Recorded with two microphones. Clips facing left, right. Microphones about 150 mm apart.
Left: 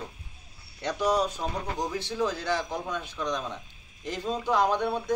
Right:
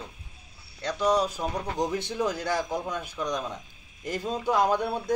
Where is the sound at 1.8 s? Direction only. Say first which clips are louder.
Right 2 dB; 20° right (ahead or behind).